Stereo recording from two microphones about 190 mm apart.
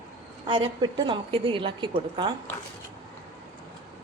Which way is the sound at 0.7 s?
25° right (ahead or behind).